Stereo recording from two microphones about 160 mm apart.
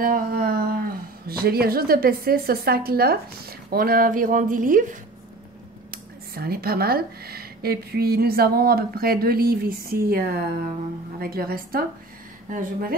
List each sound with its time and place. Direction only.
0.0 s speech: 65° right (ahead or behind)
5.9 s speech: 70° right (ahead or behind)
12.5 s speech: 55° right (ahead or behind)